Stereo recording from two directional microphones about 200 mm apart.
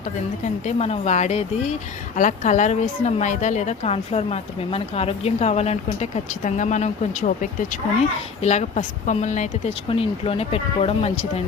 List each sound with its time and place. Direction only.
0.4 s a woman's voice: 35° left (ahead or behind)
8.4 s a woman's voice: 35° left (ahead or behind)